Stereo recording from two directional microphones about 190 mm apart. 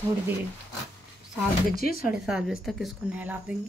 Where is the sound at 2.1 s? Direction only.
5° right (ahead or behind).